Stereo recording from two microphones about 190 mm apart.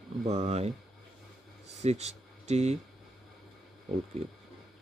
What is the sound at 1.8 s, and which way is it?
Speech, 35° right (ahead or behind).